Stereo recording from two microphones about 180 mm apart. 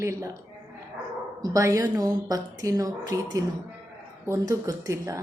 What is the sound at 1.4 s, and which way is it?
A woman's voice, 20° right (ahead or behind).